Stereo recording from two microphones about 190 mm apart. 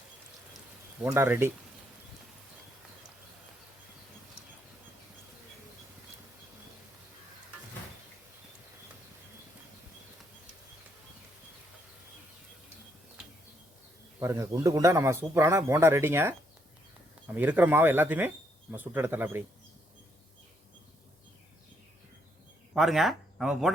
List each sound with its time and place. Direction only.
1.0 s a man's voice: 15° right (ahead or behind)
14.2 s a man's voice: 15° right (ahead or behind)
22.7 s speech: centre (ahead or behind)